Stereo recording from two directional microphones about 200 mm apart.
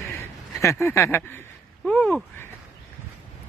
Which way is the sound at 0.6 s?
15° left (ahead or behind).